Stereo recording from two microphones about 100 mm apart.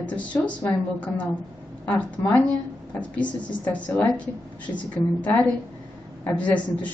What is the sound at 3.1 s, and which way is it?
A man's voice, 15° left (ahead or behind).